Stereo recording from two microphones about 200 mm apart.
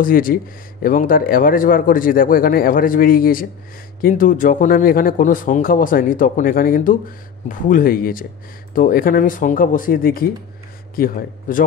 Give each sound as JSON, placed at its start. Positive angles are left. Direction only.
{"t": 0.0, "sound": "speech", "side_deg": 45}